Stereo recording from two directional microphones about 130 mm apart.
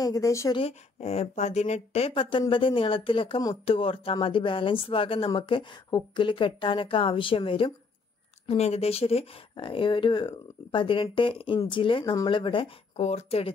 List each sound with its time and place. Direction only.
0.0 s speech: 25° left (ahead or behind)
0.6 s a woman's voice: 50° left (ahead or behind)
8.5 s a woman's voice: 55° left (ahead or behind)
13.0 s speech: 55° left (ahead or behind)